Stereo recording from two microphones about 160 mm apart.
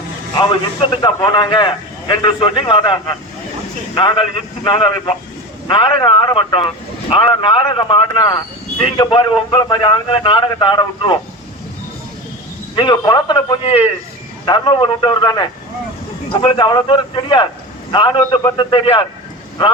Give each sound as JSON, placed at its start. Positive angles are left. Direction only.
{"t": 0.3, "sound": "a man's voice", "side_deg": 30}
{"t": 12.7, "sound": "a man's voice", "side_deg": 30}